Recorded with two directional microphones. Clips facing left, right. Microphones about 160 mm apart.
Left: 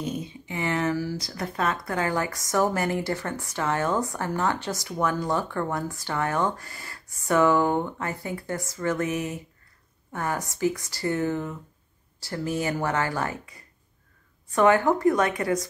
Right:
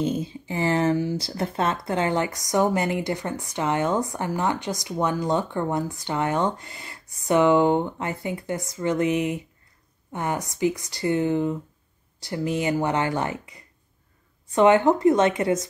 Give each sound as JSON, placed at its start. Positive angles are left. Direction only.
{"t": 0.0, "sound": "speech", "side_deg": -30}